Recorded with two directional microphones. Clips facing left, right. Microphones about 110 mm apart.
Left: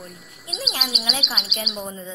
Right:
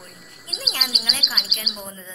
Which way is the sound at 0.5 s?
Centre (ahead or behind).